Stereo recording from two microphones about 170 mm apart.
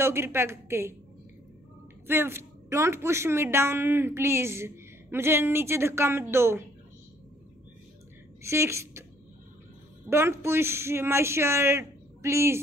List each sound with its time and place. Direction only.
0.0 s a woman's voice: 15° right (ahead or behind)
2.0 s a woman's voice: 15° right (ahead or behind)
8.4 s speech: 15° right (ahead or behind)
10.0 s a woman's voice: 15° right (ahead or behind)